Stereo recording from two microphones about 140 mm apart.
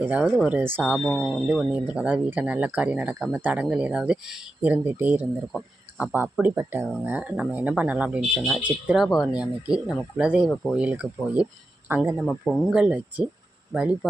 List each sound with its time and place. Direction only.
0.0 s speech: 10° right (ahead or behind)
0.9 s speech: 5° left (ahead or behind)
1.3 s speech: 5° right (ahead or behind)
6.4 s speech: 15° right (ahead or behind)
8.4 s speech: centre (ahead or behind); by 12.0 s 15° right (ahead or behind)
12.2 s speech: centre (ahead or behind)